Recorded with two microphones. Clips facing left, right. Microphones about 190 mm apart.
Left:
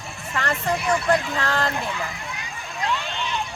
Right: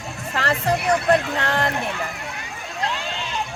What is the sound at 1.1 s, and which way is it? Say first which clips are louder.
Speech: right 3 dB; 60° right (ahead or behind).